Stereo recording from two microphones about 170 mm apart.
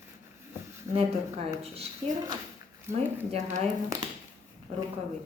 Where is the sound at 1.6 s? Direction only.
35° right (ahead or behind).